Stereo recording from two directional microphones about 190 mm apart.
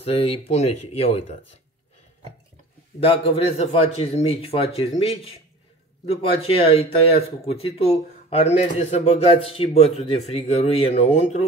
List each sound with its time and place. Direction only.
0.0 s speech: 30° left (ahead or behind)
3.0 s speech: 30° left (ahead or behind)